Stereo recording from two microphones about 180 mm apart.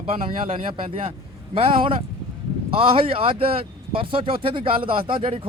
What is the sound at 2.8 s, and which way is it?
Speech, 30° right (ahead or behind).